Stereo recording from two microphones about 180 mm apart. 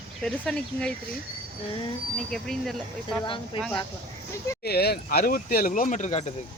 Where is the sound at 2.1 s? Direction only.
Centre (ahead or behind).